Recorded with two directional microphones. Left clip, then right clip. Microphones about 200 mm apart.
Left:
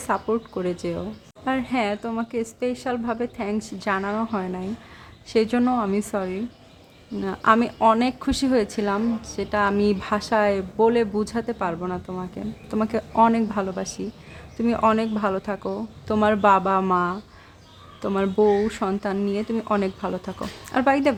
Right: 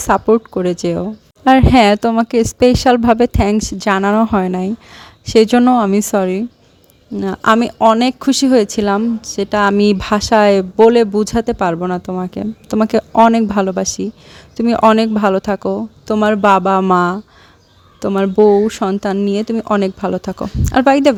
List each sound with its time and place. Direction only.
0.0 s speech: 45° right (ahead or behind)
18.4 s speech: 20° right (ahead or behind)
18.7 s speech: 40° right (ahead or behind)